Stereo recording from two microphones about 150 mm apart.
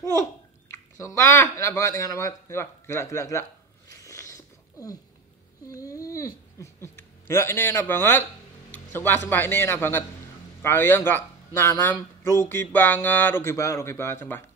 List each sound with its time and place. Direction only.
0.0 s a child's voice: 20° left (ahead or behind)
3.9 s a sound: 20° left (ahead or behind)
5.7 s speech: 20° left (ahead or behind)